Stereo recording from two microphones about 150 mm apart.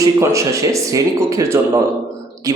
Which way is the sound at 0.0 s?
20° right (ahead or behind).